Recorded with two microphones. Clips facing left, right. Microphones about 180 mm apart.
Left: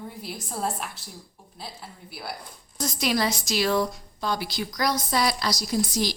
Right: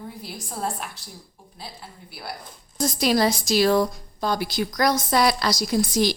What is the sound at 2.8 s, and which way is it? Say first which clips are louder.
A woman's voice: right 5 dB; 35° right (ahead or behind).